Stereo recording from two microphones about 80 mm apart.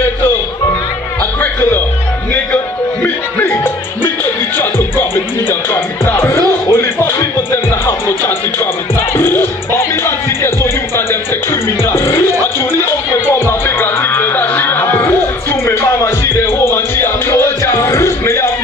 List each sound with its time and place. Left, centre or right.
1.4 s music: left
4.6 s music: left
9.1 s music: left